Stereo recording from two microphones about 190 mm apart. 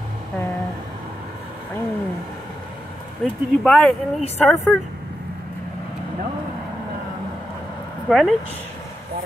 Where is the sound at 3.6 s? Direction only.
5° left (ahead or behind).